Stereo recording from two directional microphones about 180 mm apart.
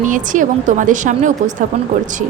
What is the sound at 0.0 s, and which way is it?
A woman's voice, 45° right (ahead or behind).